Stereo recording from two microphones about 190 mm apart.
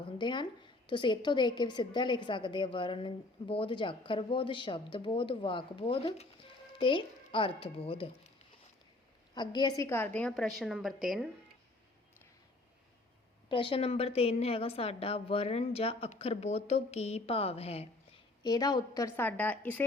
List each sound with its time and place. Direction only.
0.0 s a woman's voice: 25° left (ahead or behind)
9.3 s a woman's voice: 25° left (ahead or behind); by 11.3 s centre (ahead or behind)
13.5 s a woman's voice: 25° left (ahead or behind)
18.4 s a woman's voice: 20° left (ahead or behind)